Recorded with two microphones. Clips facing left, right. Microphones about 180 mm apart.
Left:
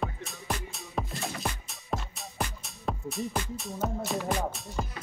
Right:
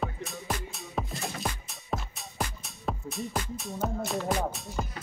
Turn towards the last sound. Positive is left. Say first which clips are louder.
# right 1 dB
turn(degrees=0)  # may be behind; listen again after turning